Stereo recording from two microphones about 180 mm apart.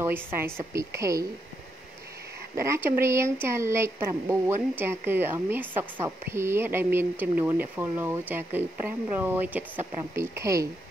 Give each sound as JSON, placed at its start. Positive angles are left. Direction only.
{"t": 0.0, "sound": "speech", "side_deg": -10}
{"t": 2.7, "sound": "speech", "side_deg": -15}